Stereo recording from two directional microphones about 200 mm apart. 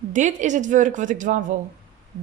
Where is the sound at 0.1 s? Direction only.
40° right (ahead or behind).